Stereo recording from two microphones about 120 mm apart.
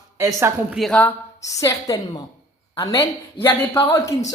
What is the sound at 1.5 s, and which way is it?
A woman's voice, 25° left (ahead or behind).